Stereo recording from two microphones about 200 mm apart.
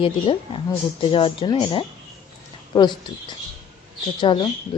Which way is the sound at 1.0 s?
25° left (ahead or behind).